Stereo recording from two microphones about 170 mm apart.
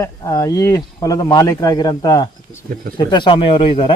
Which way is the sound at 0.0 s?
20° left (ahead or behind).